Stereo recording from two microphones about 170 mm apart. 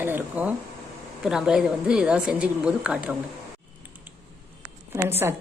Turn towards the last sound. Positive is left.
turn(degrees=-15)  # may be behind; listen again after turning